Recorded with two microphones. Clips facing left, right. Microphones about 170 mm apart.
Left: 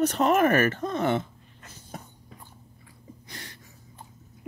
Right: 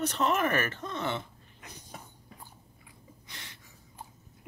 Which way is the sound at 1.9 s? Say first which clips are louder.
Left 7 dB; 45° left (ahead or behind).